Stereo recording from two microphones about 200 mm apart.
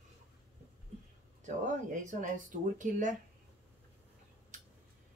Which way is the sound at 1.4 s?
40° right (ahead or behind).